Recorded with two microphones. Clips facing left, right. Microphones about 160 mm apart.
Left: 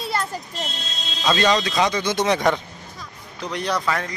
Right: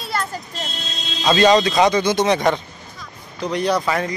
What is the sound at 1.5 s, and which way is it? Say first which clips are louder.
Speech: right 6 dB; 50° right (ahead or behind).